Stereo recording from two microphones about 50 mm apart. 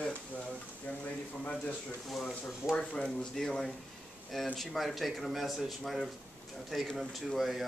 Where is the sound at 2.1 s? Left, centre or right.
Centre.